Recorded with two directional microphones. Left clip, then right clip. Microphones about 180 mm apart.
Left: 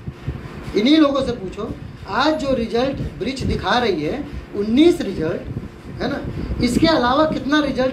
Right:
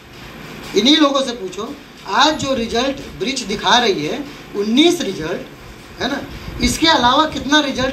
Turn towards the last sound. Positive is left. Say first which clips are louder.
# right 3 dB
turn(degrees=-55)  # may be behind; listen again after turning